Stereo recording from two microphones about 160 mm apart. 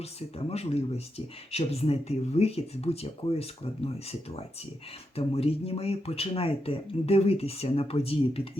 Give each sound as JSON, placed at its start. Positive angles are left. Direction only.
{"t": 0.0, "sound": "speech", "side_deg": 40}